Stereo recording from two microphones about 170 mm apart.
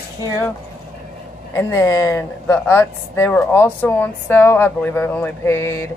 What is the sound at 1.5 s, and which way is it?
Speech, 20° left (ahead or behind).